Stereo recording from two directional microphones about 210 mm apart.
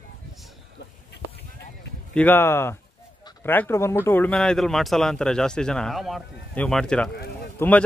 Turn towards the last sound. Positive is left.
turn(degrees=10)  # may be behind; listen again after turning